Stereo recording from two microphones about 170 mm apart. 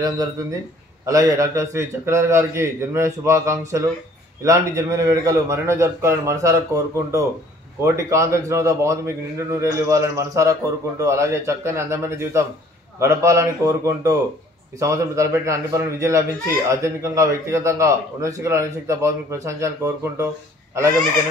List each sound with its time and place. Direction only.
1.0 s a man's voice: 20° right (ahead or behind)